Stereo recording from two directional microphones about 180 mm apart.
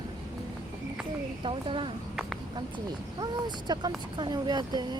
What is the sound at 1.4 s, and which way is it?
Speech, 30° right (ahead or behind).